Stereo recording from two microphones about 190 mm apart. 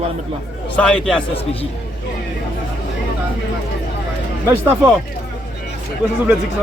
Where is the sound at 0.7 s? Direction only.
5° left (ahead or behind).